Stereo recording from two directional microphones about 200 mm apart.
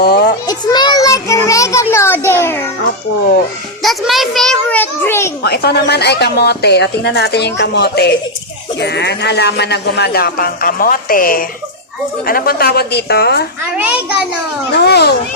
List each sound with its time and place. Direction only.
0.0 s a child's voice: 50° left (ahead or behind)
0.4 s child singing: 20° left (ahead or behind)
3.8 s a child's voice: centre (ahead or behind)
5.4 s speech: 55° left (ahead or behind)
13.7 s a child's voice: 5° right (ahead or behind)
14.8 s speech: 55° left (ahead or behind)